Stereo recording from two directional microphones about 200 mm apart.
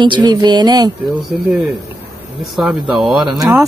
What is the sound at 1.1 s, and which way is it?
A woman's voice, 5° right (ahead or behind).